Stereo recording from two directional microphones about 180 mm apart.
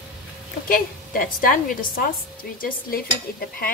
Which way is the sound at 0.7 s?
50° left (ahead or behind).